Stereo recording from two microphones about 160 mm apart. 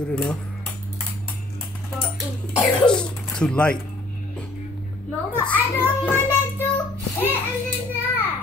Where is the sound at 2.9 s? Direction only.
5° left (ahead or behind).